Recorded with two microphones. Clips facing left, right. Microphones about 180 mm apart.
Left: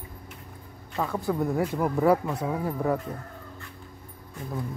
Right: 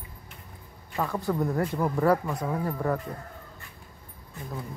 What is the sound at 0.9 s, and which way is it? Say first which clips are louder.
Speech: left 1 dB; centre (ahead or behind).